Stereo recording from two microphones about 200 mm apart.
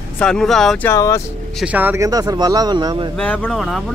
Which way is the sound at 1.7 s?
10° right (ahead or behind).